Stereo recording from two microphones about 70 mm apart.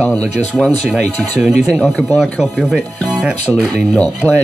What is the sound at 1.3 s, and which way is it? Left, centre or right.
Speech, centre.